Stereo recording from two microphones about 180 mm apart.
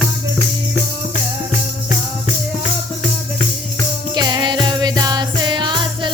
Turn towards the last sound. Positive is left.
turn(degrees=-25)  # may be behind; listen again after turning